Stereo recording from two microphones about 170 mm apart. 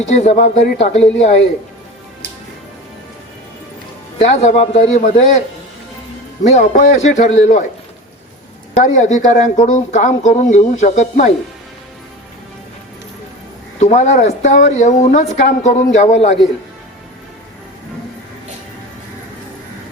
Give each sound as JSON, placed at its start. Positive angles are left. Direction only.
{"t": 0.1, "sound": "speech", "side_deg": 45}
{"t": 4.2, "sound": "a woman's voice", "side_deg": 40}
{"t": 6.6, "sound": "a woman's voice", "side_deg": 50}
{"t": 8.7, "sound": "a woman's voice", "side_deg": 45}
{"t": 13.7, "sound": "a woman's voice", "side_deg": 45}